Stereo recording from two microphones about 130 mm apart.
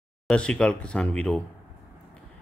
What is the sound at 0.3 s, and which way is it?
Speech, 5° left (ahead or behind).